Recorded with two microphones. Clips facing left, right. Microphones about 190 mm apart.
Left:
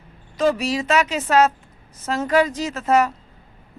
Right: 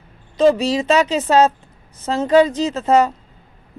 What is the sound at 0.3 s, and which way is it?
A woman's voice, 30° right (ahead or behind).